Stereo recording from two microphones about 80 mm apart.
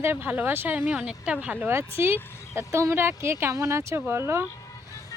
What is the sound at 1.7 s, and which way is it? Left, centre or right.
A woman's voice, right.